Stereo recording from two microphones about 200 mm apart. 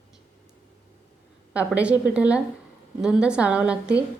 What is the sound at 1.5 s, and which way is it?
A woman's voice, 5° right (ahead or behind).